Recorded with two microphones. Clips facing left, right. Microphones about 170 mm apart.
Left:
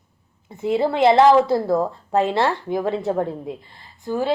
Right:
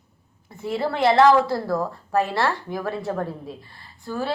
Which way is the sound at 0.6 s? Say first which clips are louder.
Left 5 dB; 20° left (ahead or behind).